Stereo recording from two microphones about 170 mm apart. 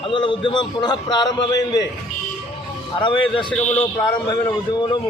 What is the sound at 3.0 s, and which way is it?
A man's voice, 30° left (ahead or behind).